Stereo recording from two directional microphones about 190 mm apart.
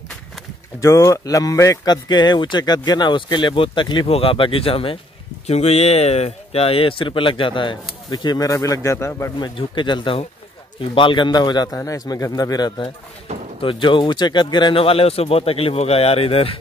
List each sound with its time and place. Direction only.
0.7 s speech: 15° left (ahead or behind)
9.6 s speech: 25° left (ahead or behind)